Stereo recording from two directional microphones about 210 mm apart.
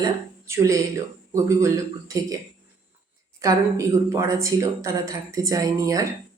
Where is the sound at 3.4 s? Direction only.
15° right (ahead or behind).